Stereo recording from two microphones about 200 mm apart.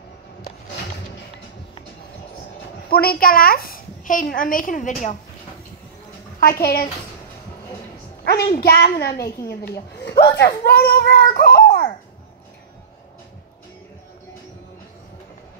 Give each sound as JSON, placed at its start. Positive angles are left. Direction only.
{"t": 2.9, "sound": "a woman's voice", "side_deg": 50}
{"t": 6.4, "sound": "a child's voice", "side_deg": 50}
{"t": 8.5, "sound": "a child's voice", "side_deg": 50}